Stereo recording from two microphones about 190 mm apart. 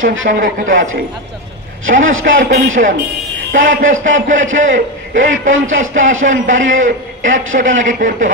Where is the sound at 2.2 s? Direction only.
45° right (ahead or behind).